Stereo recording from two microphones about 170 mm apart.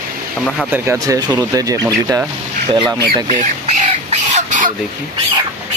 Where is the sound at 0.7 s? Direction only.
15° right (ahead or behind).